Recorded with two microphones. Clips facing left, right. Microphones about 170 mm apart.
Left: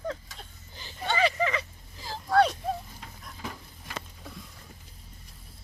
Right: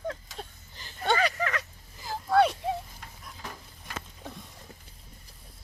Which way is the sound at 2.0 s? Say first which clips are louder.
Even; 5° right (ahead or behind).